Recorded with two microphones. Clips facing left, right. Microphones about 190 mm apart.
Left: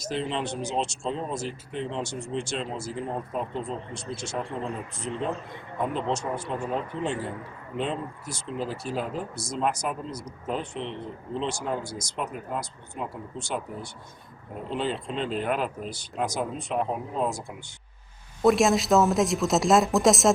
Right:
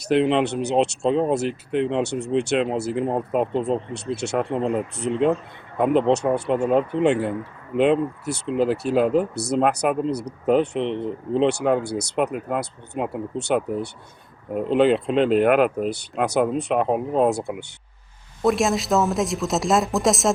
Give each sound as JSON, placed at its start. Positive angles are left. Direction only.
{"t": 0.0, "sound": "speech", "side_deg": -65}
{"t": 18.4, "sound": "speech", "side_deg": 0}